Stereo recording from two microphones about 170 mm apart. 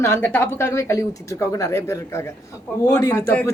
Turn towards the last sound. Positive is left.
turn(degrees=15)  # may be behind; listen again after turning